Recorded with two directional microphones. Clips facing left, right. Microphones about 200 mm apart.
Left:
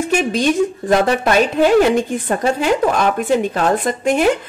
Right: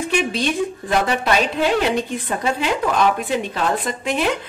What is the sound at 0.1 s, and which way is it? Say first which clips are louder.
Speech: left 5 dB; 45° left (ahead or behind).